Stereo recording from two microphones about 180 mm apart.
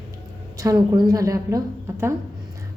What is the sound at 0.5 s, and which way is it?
A woman's voice, 20° right (ahead or behind).